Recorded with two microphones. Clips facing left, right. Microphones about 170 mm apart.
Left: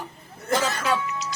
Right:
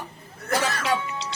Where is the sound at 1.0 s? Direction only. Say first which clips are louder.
Left 1 dB; 30° right (ahead or behind).